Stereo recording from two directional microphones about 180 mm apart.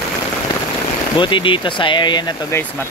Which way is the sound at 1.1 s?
25° left (ahead or behind).